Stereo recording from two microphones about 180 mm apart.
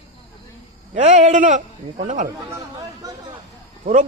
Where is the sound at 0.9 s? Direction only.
40° right (ahead or behind).